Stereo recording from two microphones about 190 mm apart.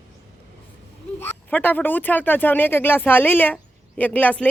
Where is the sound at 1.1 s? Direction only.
10° left (ahead or behind).